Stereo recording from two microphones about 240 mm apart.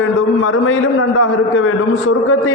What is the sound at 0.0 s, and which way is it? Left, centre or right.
A man's voice, left.